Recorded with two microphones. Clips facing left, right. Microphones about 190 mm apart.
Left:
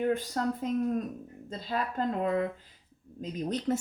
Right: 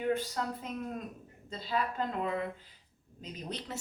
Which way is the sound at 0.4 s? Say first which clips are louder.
Left 8 dB; 45° left (ahead or behind).